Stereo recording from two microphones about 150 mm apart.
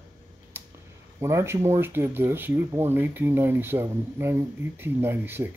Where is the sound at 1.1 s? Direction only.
20° right (ahead or behind).